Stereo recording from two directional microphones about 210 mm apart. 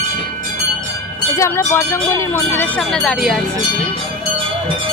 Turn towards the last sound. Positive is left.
turn(degrees=0)  # may be behind; listen again after turning